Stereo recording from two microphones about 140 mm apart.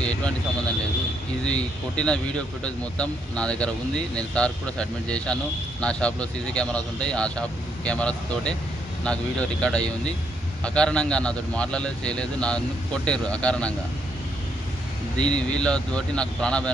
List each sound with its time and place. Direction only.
1.4 s speech: 5° left (ahead or behind)
15.2 s speech: 5° left (ahead or behind)